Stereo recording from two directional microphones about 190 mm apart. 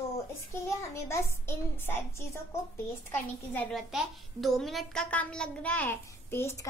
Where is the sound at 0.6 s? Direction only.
15° left (ahead or behind).